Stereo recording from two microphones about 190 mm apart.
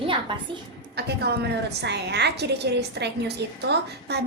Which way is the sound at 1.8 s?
65° right (ahead or behind).